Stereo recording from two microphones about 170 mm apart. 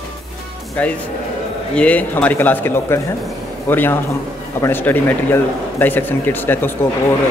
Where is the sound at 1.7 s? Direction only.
5° left (ahead or behind).